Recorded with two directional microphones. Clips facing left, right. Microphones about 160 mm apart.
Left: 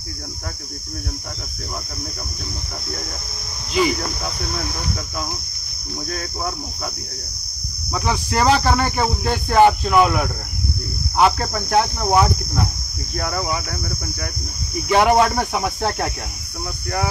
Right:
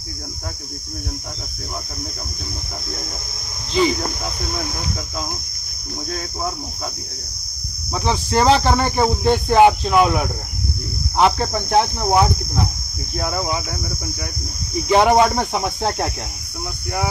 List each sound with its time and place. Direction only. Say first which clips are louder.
3.7 s cricket: right 1 dB; 25° right (ahead or behind)
6.0 s cricket: right 1 dB; 20° right (ahead or behind)
7.9 s cricket: right 2 dB; 25° right (ahead or behind)
11.3 s cricket: right 1 dB; 20° right (ahead or behind)
14.9 s cricket: right 1 dB; 20° right (ahead or behind)